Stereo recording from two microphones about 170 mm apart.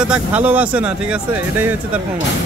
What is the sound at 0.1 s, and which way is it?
Speech, 10° right (ahead or behind).